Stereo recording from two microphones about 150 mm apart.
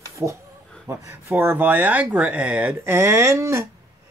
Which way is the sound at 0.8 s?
20° right (ahead or behind).